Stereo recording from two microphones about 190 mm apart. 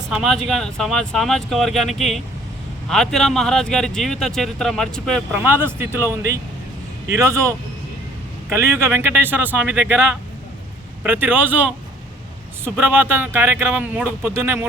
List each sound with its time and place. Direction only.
0.1 s speech: centre (ahead or behind)
5.4 s speech: 10° right (ahead or behind)
11.0 s speech: 10° right (ahead or behind)